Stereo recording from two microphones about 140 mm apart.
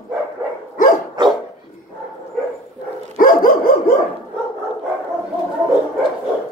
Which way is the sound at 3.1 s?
90° left.